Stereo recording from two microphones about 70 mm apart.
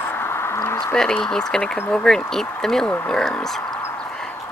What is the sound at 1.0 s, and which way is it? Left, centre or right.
Speech, centre.